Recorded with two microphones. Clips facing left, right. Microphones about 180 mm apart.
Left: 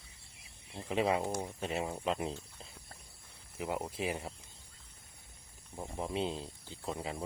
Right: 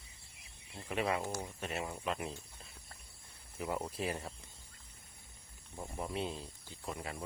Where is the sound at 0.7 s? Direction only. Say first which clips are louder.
Left 4 dB; 25° left (ahead or behind).